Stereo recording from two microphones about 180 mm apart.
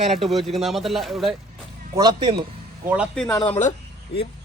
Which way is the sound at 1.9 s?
25° right (ahead or behind).